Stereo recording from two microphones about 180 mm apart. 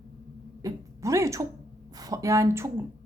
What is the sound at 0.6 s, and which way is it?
A woman's voice, 15° right (ahead or behind).